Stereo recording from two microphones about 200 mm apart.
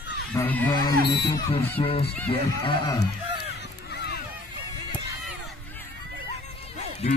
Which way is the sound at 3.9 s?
55° left (ahead or behind).